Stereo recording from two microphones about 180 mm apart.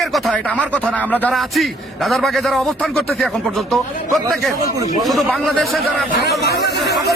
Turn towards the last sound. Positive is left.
turn(degrees=70)  # may be behind; listen again after turning